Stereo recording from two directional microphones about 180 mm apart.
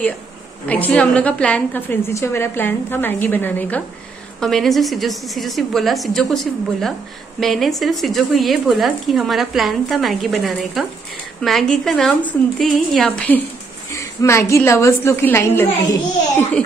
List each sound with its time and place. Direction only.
0.7 s a woman's voice: 10° left (ahead or behind)
13.9 s a sound: 15° left (ahead or behind)
14.5 s a woman's voice: 15° left (ahead or behind)